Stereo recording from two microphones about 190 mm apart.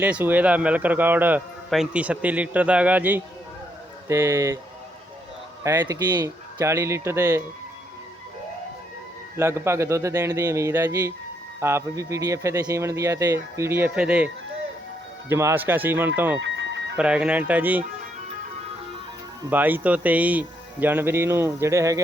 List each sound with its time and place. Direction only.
0.0 s a man's voice: 10° right (ahead or behind)
5.6 s a man's voice: 20° right (ahead or behind)
9.4 s a man's voice: 15° right (ahead or behind)
15.3 s a man's voice: 15° right (ahead or behind)
16.4 s music: 70° right (ahead or behind)
17.0 s a man's voice: 5° right (ahead or behind)
19.5 s a man's voice: 10° right (ahead or behind)